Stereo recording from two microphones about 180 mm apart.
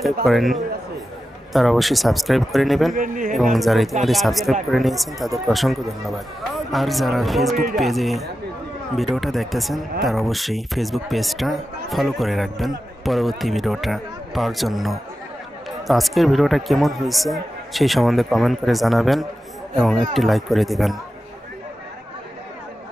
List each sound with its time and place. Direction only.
0.0 s speech: centre (ahead or behind)
2.9 s speech: 50° right (ahead or behind)
3.5 s speech: centre (ahead or behind)